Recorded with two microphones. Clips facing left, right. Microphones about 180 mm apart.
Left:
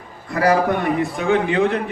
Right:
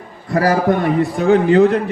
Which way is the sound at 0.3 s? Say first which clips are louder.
Right 2 dB; 35° right (ahead or behind).